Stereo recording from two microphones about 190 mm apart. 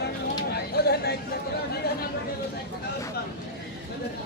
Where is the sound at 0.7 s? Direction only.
55° left (ahead or behind).